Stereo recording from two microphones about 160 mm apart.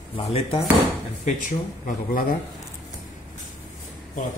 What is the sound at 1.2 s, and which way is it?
Speech, 55° left (ahead or behind).